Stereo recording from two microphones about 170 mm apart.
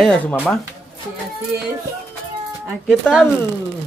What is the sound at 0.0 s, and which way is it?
Speech, 5° left (ahead or behind).